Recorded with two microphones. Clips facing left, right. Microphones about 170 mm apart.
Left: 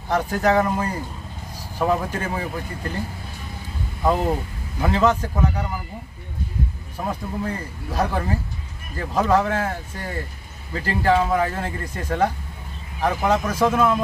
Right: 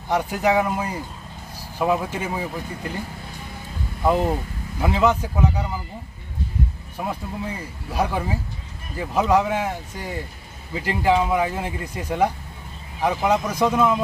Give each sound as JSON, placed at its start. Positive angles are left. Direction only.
{"t": 0.1, "sound": "speech", "side_deg": -10}
{"t": 4.8, "sound": "speech", "side_deg": -10}
{"t": 7.1, "sound": "speech", "side_deg": -10}